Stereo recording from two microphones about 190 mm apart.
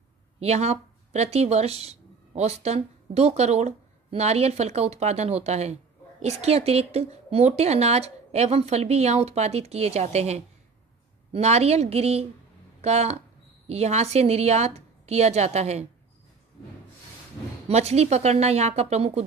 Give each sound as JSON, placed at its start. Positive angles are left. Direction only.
{"t": 0.4, "sound": "speech", "side_deg": -35}
{"t": 17.6, "sound": "speech", "side_deg": -35}